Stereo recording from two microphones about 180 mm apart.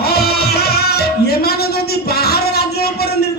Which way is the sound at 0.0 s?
60° left (ahead or behind).